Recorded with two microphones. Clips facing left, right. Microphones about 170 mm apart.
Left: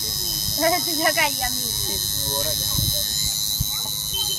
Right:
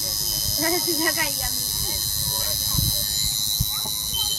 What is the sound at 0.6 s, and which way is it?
Speech, 90° left.